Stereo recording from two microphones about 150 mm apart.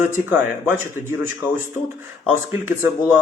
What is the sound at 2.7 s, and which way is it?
Speech, 15° right (ahead or behind).